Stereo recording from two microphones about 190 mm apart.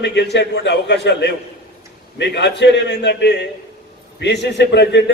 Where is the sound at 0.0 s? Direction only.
65° left (ahead or behind).